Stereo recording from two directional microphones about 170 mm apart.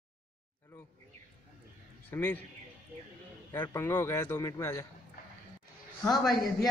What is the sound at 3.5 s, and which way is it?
A man's voice, 15° left (ahead or behind).